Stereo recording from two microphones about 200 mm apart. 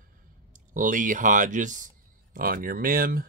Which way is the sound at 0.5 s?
40° right (ahead or behind).